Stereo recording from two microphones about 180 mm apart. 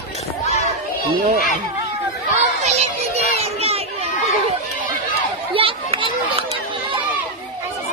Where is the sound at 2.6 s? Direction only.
40° right (ahead or behind).